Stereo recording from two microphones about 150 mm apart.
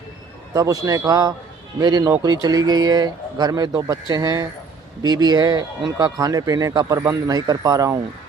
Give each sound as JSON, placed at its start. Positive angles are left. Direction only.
{"t": 0.5, "sound": "speech", "side_deg": -25}